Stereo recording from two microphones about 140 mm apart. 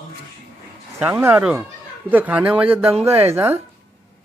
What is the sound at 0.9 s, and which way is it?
Speech, 15° right (ahead or behind).